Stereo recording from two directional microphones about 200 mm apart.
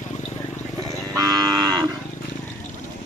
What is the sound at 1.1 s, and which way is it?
Livestock, 20° right (ahead or behind).